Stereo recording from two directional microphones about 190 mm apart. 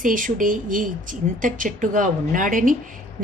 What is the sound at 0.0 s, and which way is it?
Speech, 45° right (ahead or behind).